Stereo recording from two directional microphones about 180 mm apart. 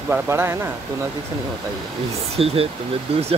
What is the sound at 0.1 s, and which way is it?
Speech, 15° right (ahead or behind).